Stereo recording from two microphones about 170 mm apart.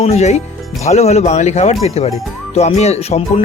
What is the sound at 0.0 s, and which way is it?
Speech, 40° left (ahead or behind).